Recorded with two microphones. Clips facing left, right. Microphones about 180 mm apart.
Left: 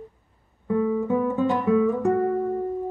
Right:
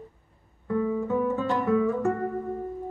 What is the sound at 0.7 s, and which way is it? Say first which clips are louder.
Guitar: left 3 dB; 15° left (ahead or behind).